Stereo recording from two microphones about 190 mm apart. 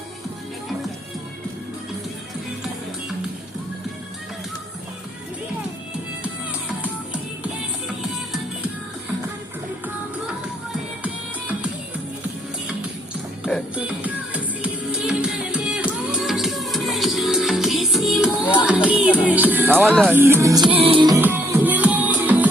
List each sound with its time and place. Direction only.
6.2 s music: 5° right (ahead or behind)
13.4 s music: 5° right (ahead or behind); by 21.2 s 25° right (ahead or behind)
21.2 s music: 10° right (ahead or behind)